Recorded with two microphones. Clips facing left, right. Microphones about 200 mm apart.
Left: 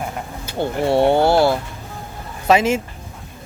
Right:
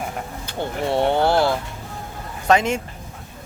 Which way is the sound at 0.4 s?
10° left (ahead or behind).